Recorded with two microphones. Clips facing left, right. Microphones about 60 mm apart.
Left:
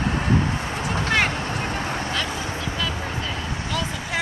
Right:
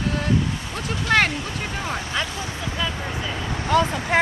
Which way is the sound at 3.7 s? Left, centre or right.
Right.